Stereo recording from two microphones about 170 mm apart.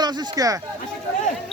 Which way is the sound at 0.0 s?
20° right (ahead or behind).